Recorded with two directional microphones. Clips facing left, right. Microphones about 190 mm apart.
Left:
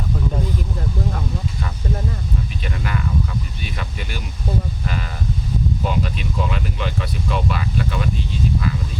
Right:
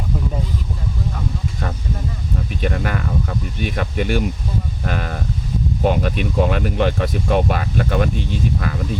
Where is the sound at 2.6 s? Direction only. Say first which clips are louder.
Right 7 dB; 50° right (ahead or behind).